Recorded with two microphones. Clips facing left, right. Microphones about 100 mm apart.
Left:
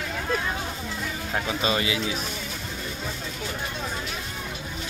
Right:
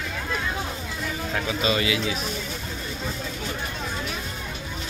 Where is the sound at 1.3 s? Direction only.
30° left (ahead or behind).